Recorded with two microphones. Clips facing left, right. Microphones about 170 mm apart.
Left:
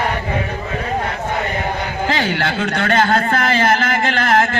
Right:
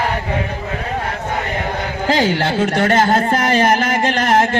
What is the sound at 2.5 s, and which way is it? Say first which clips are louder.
A man's voice: right 3 dB; 20° right (ahead or behind).